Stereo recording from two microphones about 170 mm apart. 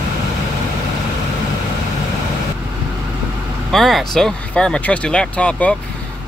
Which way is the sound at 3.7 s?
Centre (ahead or behind).